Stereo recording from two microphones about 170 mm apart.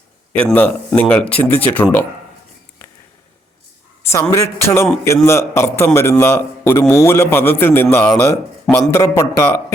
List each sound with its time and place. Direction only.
0.3 s a man's voice: 10° left (ahead or behind)
4.0 s a man's voice: 15° left (ahead or behind)